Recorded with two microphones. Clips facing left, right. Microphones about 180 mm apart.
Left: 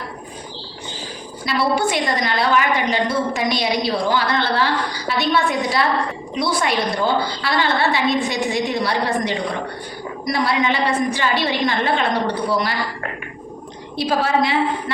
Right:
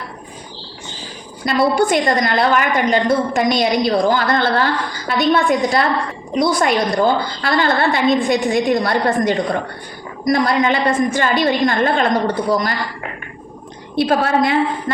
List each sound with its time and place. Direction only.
1.5 s a woman's voice: 50° right (ahead or behind)
13.9 s a woman's voice: 55° right (ahead or behind)